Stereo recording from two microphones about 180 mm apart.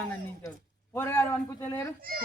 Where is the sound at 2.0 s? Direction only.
55° right (ahead or behind).